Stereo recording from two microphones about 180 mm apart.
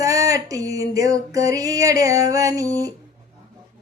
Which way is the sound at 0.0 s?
20° right (ahead or behind).